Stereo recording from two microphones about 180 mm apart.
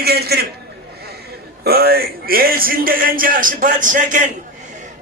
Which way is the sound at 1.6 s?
60° right (ahead or behind).